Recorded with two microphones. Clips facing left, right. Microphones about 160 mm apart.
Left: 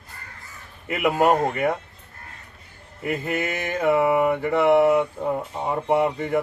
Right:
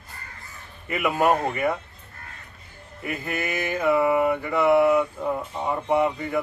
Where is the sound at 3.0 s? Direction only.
20° left (ahead or behind).